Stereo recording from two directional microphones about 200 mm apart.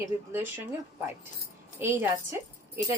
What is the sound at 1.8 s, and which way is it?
A woman's voice, 10° right (ahead or behind).